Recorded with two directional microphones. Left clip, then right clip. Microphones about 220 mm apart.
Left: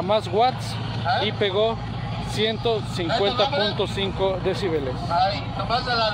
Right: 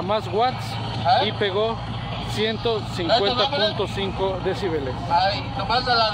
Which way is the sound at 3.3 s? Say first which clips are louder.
Right 1 dB; 35° right (ahead or behind).